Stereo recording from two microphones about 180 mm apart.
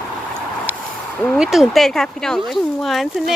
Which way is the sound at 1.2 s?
Centre (ahead or behind).